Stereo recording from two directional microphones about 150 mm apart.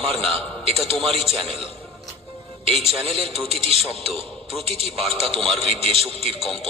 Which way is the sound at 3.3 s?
Centre (ahead or behind).